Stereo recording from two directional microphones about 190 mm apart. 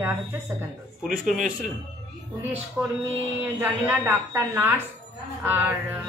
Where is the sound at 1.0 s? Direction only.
Centre (ahead or behind).